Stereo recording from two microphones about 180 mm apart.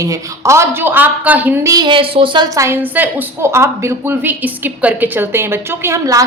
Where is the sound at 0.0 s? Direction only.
15° right (ahead or behind).